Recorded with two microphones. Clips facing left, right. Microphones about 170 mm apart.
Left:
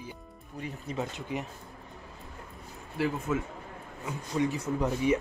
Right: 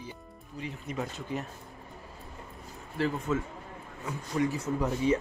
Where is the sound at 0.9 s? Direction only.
30° left (ahead or behind).